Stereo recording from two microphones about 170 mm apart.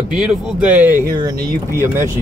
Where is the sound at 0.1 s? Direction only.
5° right (ahead or behind).